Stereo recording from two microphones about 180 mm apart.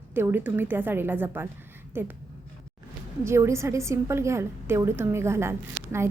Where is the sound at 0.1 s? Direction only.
10° right (ahead or behind).